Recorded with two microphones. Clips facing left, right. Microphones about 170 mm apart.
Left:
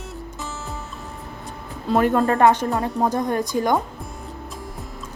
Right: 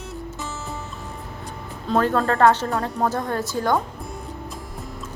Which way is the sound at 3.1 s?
15° left (ahead or behind).